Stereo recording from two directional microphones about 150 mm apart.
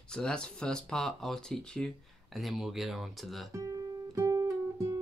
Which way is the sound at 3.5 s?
20° right (ahead or behind).